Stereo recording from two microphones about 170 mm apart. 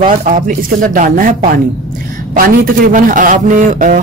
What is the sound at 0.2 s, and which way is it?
A man's voice, 50° right (ahead or behind).